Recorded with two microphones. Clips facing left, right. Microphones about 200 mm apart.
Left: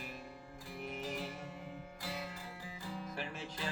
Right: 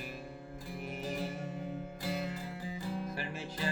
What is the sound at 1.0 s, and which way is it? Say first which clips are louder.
Music: right 8 dB; 30° right (ahead or behind).